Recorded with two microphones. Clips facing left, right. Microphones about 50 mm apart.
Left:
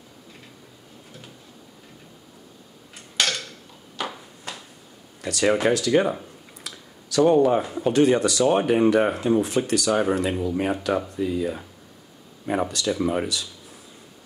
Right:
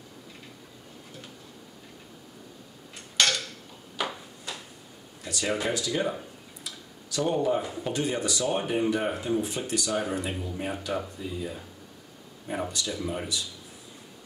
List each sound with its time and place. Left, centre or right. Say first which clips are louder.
4.0 s a sound: left 1 dB; centre
5.2 s speech: left 8 dB; left
6.6 s speech: left 3 dB; left
12.4 s speech: left 7 dB; left